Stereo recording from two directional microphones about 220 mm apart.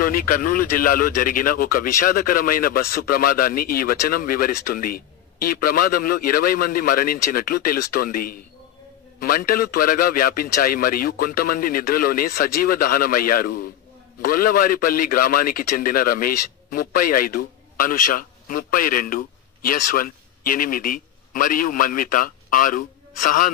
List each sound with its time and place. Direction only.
0.0 s a man's voice: 40° left (ahead or behind)